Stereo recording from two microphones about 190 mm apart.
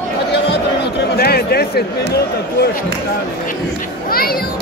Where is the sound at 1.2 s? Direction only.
55° left (ahead or behind).